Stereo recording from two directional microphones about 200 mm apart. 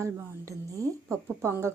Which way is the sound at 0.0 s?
15° right (ahead or behind).